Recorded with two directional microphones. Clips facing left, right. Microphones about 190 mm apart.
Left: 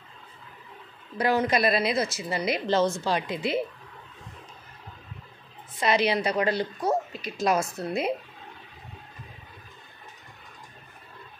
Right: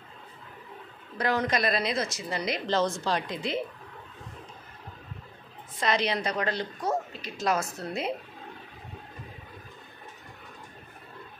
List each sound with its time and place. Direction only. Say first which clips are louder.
1.1 s speech: left 3 dB; 10° left (ahead or behind)
5.8 s speech: left 4 dB; 10° left (ahead or behind)